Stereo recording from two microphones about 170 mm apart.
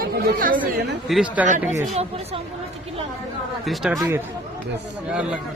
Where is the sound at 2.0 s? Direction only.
35° right (ahead or behind).